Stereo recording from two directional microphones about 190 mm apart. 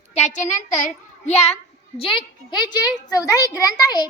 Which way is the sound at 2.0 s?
25° left (ahead or behind).